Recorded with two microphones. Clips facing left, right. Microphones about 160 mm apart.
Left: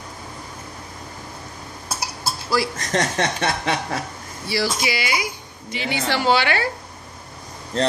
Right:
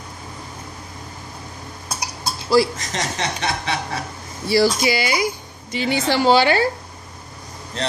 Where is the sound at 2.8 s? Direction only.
55° left (ahead or behind).